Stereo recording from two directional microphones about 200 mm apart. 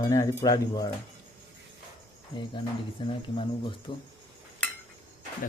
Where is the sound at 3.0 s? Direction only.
25° left (ahead or behind).